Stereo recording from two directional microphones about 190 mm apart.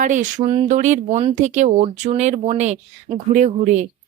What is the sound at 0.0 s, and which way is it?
Speech, 40° right (ahead or behind).